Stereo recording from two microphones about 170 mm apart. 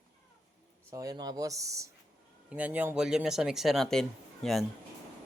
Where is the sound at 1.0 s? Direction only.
20° right (ahead or behind); by 4.0 s centre (ahead or behind).